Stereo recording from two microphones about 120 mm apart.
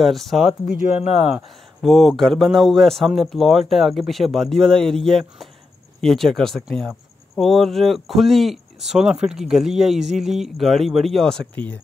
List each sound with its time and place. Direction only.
0.0 s speech: centre (ahead or behind)
0.9 s speech: 60° left (ahead or behind)
1.3 s speech: centre (ahead or behind)